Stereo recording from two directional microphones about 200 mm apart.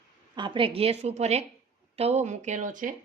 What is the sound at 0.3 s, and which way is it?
A woman's voice, 25° right (ahead or behind).